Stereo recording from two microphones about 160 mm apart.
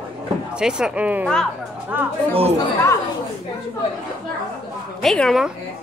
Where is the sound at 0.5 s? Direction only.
5° right (ahead or behind).